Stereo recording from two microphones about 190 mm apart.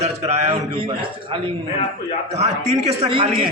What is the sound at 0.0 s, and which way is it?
A man's voice, 35° right (ahead or behind).